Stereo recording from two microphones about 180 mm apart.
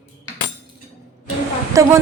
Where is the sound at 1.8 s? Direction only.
20° right (ahead or behind).